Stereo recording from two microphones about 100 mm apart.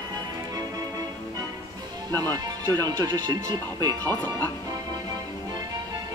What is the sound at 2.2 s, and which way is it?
Speech, 40° right (ahead or behind).